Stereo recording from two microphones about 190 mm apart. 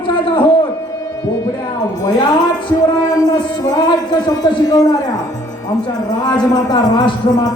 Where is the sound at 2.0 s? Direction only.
20° left (ahead or behind).